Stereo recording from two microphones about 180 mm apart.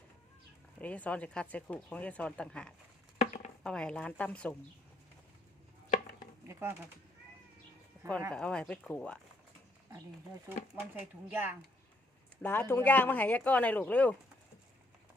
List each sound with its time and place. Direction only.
0.8 s speech: 10° left (ahead or behind)
3.2 s chopping: 40° left (ahead or behind)
3.6 s speech: 5° left (ahead or behind)
6.5 s speech: 15° right (ahead or behind)
8.3 s speech: 5° left (ahead or behind)
10.9 s speech: 10° right (ahead or behind)
12.4 s speech: 10° left (ahead or behind)